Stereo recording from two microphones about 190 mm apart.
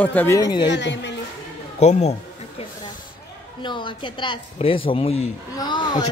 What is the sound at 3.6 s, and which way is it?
Speech, 25° left (ahead or behind).